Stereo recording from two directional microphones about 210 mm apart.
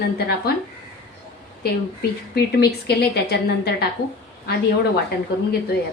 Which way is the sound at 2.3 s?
50° left (ahead or behind).